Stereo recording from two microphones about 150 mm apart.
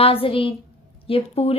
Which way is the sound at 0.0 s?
40° left (ahead or behind).